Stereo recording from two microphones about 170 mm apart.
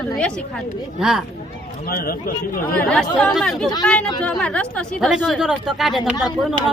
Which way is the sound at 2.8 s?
5° left (ahead or behind).